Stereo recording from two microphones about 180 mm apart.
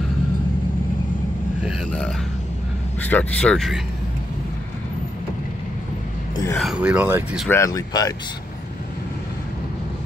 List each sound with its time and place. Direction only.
1.6 s speech: centre (ahead or behind)
6.5 s speech: centre (ahead or behind)
7.4 s speech: 15° left (ahead or behind)